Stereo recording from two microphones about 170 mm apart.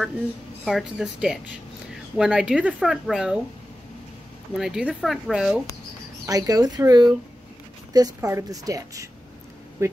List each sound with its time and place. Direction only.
0.7 s speech: centre (ahead or behind)
4.6 s speech: 5° right (ahead or behind)
6.2 s speech: 20° right (ahead or behind)